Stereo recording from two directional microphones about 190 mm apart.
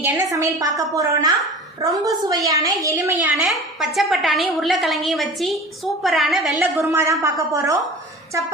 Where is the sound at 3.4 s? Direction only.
Centre (ahead or behind).